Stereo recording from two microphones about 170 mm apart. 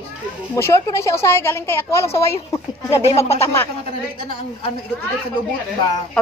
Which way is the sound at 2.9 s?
35° left (ahead or behind).